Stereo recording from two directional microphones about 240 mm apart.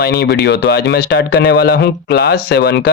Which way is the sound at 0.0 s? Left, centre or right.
Left.